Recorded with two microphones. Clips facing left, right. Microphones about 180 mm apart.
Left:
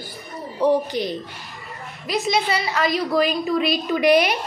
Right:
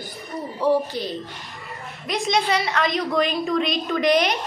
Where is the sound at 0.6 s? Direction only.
15° left (ahead or behind).